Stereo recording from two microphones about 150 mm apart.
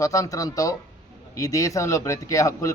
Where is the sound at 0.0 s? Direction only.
25° left (ahead or behind).